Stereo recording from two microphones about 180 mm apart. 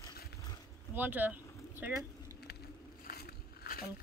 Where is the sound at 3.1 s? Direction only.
55° left (ahead or behind).